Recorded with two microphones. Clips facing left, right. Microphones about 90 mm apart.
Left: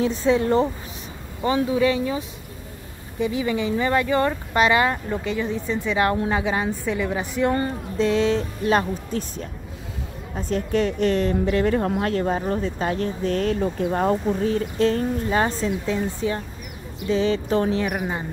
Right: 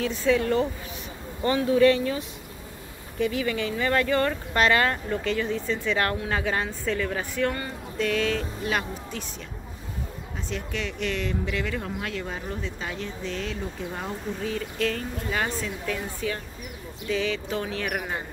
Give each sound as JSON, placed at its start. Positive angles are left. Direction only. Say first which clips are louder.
{"t": 0.0, "sound": "speech", "louder": "left 4 dB", "side_deg": 25}
{"t": 1.8, "sound": "speech", "louder": "right 1 dB", "side_deg": 15}
{"t": 3.2, "sound": "speech", "louder": "left 3 dB", "side_deg": 20}
{"t": 14.4, "sound": "speech", "louder": "left 7 dB", "side_deg": 35}
{"t": 17.9, "sound": "speech", "louder": "left 4 dB", "side_deg": 15}